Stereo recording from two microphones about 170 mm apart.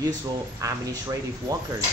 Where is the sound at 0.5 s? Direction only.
20° right (ahead or behind).